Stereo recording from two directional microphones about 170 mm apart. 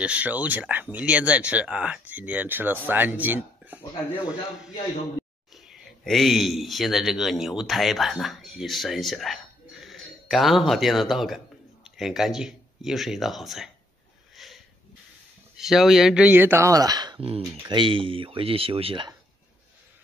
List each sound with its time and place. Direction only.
0.0 s a man's voice: 5° right (ahead or behind)
14.3 s a sound: centre (ahead or behind)
15.5 s speech: centre (ahead or behind); by 19.1 s 30° right (ahead or behind)